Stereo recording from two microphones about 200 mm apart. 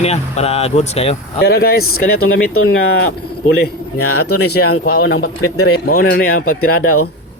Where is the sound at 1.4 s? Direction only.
50° left (ahead or behind).